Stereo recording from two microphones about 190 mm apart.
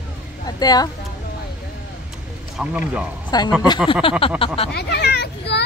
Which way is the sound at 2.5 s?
5° right (ahead or behind).